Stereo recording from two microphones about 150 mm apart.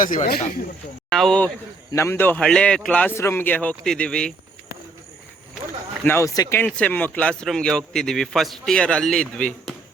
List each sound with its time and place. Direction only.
0.0 s speech: 60° left (ahead or behind)
1.1 s a man's voice: 5° left (ahead or behind)
1.9 s a man's voice: 15° left (ahead or behind)
6.1 s speech: 20° left (ahead or behind)
6.7 s a man's voice: 10° left (ahead or behind)